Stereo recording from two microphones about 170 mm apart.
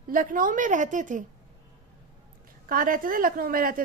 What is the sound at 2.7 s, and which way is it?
A woman's voice, 55° right (ahead or behind).